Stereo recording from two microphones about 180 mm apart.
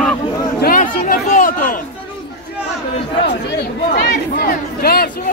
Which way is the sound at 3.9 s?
60° left (ahead or behind).